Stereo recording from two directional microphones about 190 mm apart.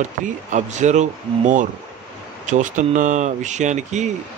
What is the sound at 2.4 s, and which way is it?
Speech, 40° right (ahead or behind).